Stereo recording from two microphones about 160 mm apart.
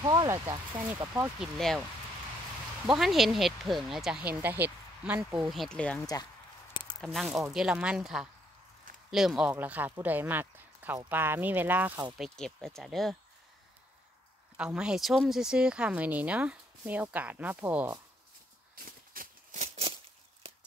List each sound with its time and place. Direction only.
0.0 s speech: 30° right (ahead or behind)
0.7 s speech: 15° right (ahead or behind)
1.4 s speech: centre (ahead or behind)
2.9 s speech: centre (ahead or behind)
5.5 s speech: 5° left (ahead or behind)
12.2 s speech: 5° left (ahead or behind)
14.6 s speech: 5° right (ahead or behind)
18.9 s a sound: 60° right (ahead or behind)
19.6 s a sound: 45° right (ahead or behind)